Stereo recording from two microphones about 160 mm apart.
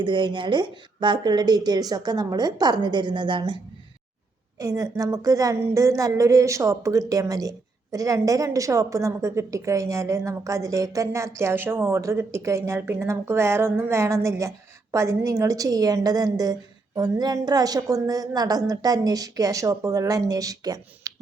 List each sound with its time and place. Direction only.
0.0 s a woman's voice: 30° right (ahead or behind)